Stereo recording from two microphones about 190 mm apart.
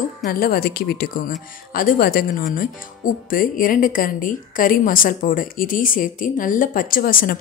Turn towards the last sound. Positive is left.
turn(degrees=50)  # may be behind; listen again after turning